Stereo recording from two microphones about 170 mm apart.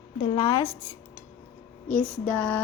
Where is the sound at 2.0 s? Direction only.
5° left (ahead or behind).